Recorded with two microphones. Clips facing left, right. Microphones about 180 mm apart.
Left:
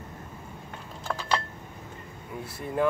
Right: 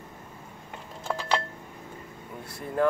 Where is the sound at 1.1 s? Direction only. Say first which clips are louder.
Right 2 dB; 10° right (ahead or behind).